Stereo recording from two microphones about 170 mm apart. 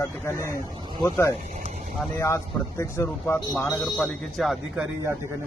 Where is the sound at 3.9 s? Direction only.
Centre (ahead or behind).